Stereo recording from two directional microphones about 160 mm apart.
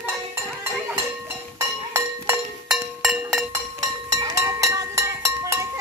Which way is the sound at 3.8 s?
20° right (ahead or behind).